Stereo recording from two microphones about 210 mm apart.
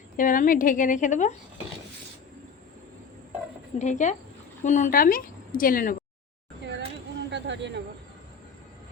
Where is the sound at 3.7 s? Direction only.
35° left (ahead or behind).